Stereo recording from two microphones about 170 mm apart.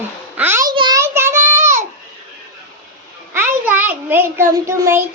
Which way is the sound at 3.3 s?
10° right (ahead or behind).